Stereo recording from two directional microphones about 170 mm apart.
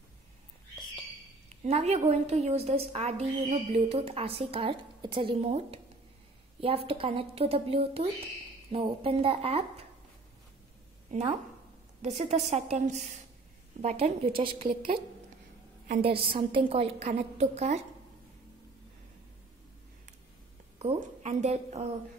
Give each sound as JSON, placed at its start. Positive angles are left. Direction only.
{"t": 1.6, "sound": "a woman's voice", "side_deg": -40}
{"t": 11.1, "sound": "a woman's voice", "side_deg": -45}
{"t": 16.1, "sound": "a woman's voice", "side_deg": -30}
{"t": 20.8, "sound": "a woman's voice", "side_deg": -40}